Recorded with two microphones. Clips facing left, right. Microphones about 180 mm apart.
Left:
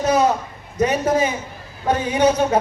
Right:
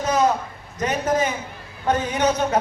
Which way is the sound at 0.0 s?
10° left (ahead or behind).